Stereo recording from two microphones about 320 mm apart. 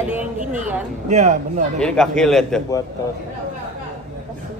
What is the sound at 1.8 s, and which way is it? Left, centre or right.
A man's voice, centre.